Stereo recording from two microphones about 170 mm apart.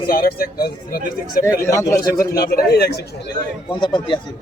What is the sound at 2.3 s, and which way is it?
Speech, 65° left (ahead or behind).